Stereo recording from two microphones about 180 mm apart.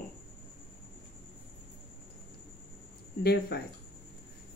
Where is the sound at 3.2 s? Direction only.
60° left (ahead or behind).